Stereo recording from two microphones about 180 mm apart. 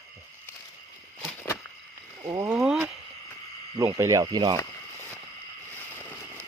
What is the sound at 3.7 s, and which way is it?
Speech, 15° right (ahead or behind).